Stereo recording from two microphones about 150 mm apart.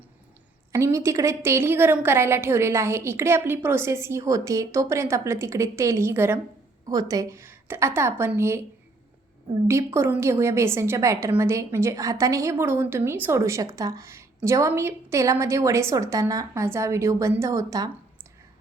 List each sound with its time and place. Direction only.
0.7 s a woman's voice: 20° right (ahead or behind)
9.6 s a woman's voice: 15° right (ahead or behind)